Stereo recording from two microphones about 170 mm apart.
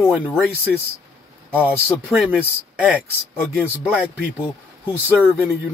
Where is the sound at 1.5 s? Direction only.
10° right (ahead or behind).